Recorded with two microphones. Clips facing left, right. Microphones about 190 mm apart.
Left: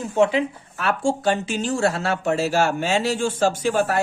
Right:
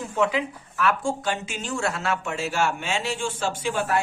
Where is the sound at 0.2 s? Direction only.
25° left (ahead or behind).